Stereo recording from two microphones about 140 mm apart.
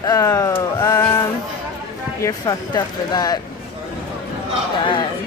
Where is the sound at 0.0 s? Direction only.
25° left (ahead or behind).